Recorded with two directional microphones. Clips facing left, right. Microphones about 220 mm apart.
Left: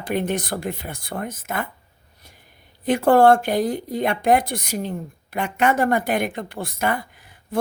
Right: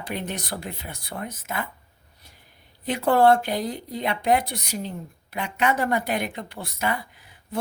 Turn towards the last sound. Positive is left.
turn(degrees=50)  # may be behind; listen again after turning